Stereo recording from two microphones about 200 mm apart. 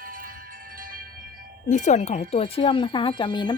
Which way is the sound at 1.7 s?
35° left (ahead or behind).